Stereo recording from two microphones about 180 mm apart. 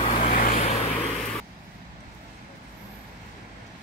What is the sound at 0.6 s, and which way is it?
Vehicle, 35° left (ahead or behind).